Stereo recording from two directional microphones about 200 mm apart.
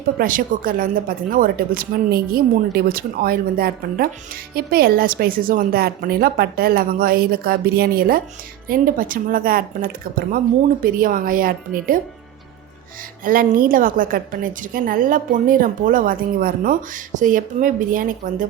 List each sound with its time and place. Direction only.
0.2 s a woman's voice: 45° right (ahead or behind)
13.2 s a woman's voice: 45° right (ahead or behind)